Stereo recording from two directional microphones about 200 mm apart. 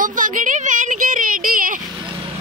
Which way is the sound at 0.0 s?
40° right (ahead or behind).